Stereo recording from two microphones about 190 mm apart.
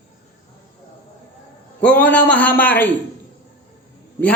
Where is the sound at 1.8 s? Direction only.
10° left (ahead or behind).